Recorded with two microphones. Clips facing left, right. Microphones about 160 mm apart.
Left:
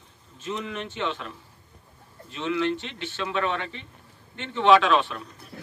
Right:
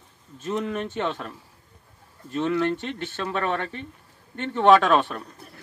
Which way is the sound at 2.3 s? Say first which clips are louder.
Right 3 dB; 50° right (ahead or behind).